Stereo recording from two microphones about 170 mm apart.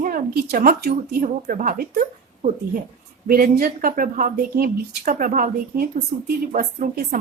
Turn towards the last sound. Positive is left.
turn(degrees=-55)  # may be behind; listen again after turning